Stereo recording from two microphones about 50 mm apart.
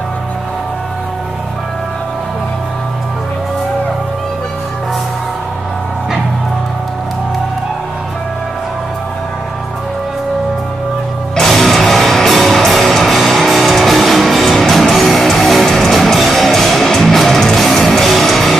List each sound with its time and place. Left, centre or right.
11.3 s music: centre